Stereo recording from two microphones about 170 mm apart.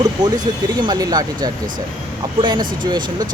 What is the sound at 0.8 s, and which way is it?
Speech, 25° right (ahead or behind).